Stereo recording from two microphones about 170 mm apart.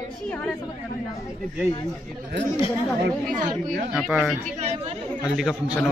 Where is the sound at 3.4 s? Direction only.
45° right (ahead or behind).